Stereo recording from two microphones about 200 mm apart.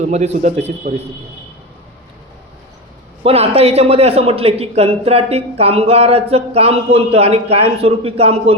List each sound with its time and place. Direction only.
0.0 s a man's voice: 35° right (ahead or behind)
3.2 s a man's voice: 30° right (ahead or behind)